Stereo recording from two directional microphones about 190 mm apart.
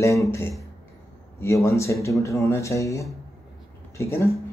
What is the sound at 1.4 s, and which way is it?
Speech, 15° left (ahead or behind).